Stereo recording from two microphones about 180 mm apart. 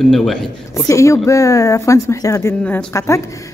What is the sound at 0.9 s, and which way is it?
Speech, 15° left (ahead or behind).